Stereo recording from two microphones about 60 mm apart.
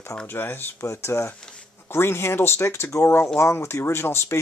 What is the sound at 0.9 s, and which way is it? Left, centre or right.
Speech, left.